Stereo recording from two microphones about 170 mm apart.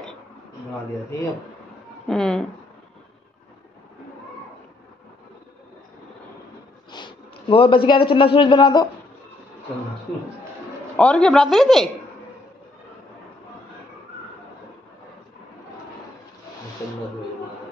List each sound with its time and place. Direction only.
2.0 s a woman's voice: 5° left (ahead or behind)
6.9 s a man's voice: 25° left (ahead or behind)
11.0 s a woman's voice: 5° left (ahead or behind)